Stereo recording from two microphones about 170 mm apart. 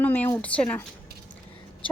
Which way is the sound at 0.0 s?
10° left (ahead or behind).